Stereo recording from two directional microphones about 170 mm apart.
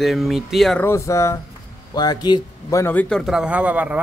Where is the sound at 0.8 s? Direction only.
15° left (ahead or behind).